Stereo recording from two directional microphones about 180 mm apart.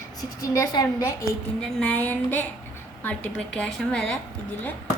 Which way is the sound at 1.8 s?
10° left (ahead or behind).